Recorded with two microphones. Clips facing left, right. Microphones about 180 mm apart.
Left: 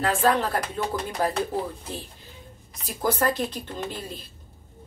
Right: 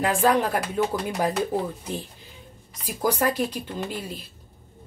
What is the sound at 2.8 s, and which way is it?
Speech, 10° right (ahead or behind).